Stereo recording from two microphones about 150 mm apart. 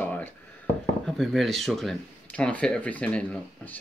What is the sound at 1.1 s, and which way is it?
Speech, centre (ahead or behind).